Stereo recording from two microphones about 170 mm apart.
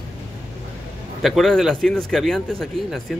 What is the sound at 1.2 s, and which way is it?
A man's voice, centre (ahead or behind).